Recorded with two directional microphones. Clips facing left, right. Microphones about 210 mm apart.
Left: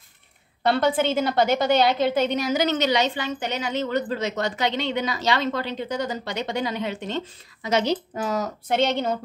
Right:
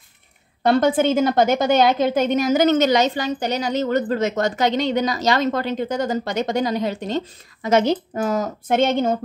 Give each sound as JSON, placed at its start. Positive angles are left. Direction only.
{"t": 0.7, "sound": "a woman's voice", "side_deg": -45}